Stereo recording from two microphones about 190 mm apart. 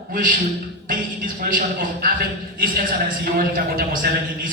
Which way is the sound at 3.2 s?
50° right (ahead or behind).